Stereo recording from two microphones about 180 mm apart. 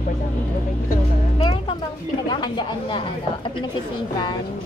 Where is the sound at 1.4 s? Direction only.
25° left (ahead or behind).